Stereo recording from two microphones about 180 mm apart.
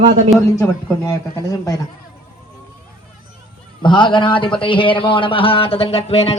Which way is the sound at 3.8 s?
25° left (ahead or behind).